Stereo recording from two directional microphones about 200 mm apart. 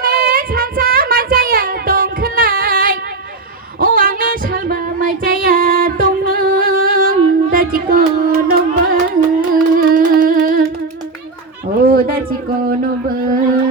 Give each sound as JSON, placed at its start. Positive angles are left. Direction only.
{"t": 0.0, "sound": "child singing", "side_deg": -45}
{"t": 3.8, "sound": "female singing", "side_deg": -45}
{"t": 9.5, "sound": "carnatic music", "side_deg": -45}
{"t": 11.9, "sound": "a sound", "side_deg": -50}